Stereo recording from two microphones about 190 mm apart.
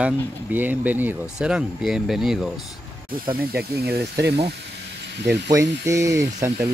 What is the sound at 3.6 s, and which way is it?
Speech, 55° right (ahead or behind).